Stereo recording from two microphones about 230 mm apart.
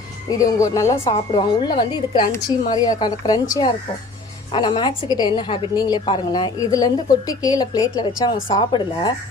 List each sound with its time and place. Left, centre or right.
0.3 s a woman's voice: centre